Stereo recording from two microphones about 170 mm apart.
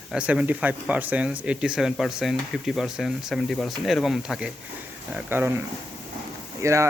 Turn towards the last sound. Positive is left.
turn(degrees=-15)  # may be behind; listen again after turning